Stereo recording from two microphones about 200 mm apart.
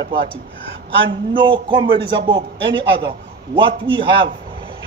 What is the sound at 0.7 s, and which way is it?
Speech, 60° right (ahead or behind).